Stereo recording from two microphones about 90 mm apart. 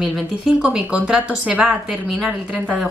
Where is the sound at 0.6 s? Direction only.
15° right (ahead or behind).